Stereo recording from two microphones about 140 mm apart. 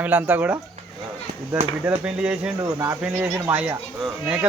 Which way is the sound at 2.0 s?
10° right (ahead or behind).